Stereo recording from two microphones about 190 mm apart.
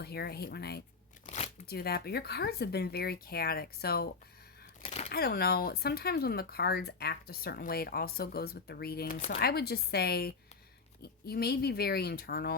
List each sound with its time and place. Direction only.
0.0 s speech: 55° left (ahead or behind)
4.8 s a sound: 35° left (ahead or behind)
5.1 s speech: 55° left (ahead or behind)